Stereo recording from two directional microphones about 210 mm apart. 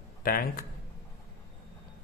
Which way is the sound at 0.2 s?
45° left (ahead or behind).